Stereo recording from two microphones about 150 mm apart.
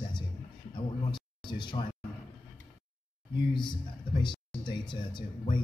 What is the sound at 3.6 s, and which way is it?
Speech, 30° left (ahead or behind).